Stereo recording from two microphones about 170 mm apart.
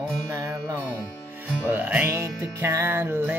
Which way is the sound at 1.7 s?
10° right (ahead or behind).